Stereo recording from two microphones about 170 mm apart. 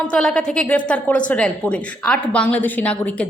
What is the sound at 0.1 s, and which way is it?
A woman's voice, 5° left (ahead or behind).